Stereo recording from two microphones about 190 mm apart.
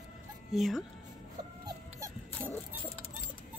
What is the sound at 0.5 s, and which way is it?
Speech, centre (ahead or behind).